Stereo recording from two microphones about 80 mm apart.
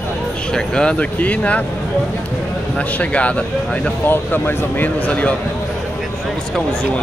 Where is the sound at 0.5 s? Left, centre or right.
Centre.